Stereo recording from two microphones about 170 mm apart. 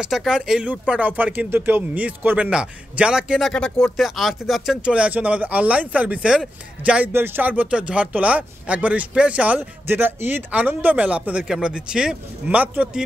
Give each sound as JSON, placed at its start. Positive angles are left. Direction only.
{"t": 0.0, "sound": "speech", "side_deg": -5}